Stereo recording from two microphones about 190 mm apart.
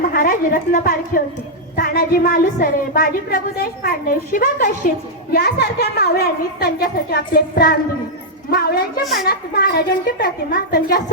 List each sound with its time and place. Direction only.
0.1 s a woman's voice: 50° left (ahead or behind)
5.3 s a woman's voice: 60° left (ahead or behind)